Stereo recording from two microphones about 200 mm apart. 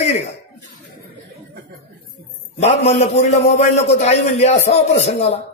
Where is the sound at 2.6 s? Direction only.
35° left (ahead or behind).